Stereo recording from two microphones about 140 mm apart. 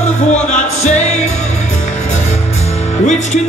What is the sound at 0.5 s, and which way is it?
Music, 55° left (ahead or behind).